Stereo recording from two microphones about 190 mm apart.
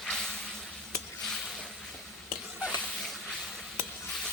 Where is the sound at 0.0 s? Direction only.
5° left (ahead or behind).